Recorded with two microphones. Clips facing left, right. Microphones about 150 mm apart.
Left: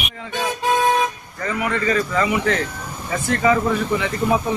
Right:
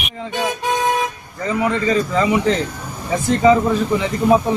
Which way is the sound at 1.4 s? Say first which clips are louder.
Right 3 dB; 25° right (ahead or behind).